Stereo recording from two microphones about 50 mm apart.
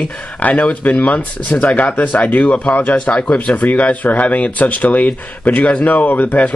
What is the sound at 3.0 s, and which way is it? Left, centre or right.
Speech, left.